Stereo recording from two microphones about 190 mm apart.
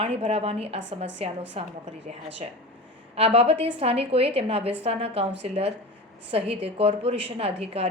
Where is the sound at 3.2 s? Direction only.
30° right (ahead or behind).